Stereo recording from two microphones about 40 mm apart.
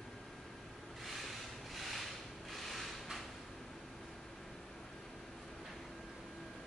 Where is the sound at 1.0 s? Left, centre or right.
Centre.